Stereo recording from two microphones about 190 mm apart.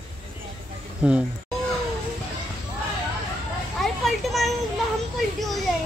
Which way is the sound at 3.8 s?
Centre (ahead or behind).